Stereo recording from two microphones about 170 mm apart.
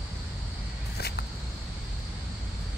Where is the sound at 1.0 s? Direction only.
70° left (ahead or behind).